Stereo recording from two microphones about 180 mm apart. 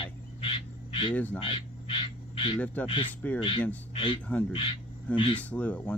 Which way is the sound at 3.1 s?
10° left (ahead or behind).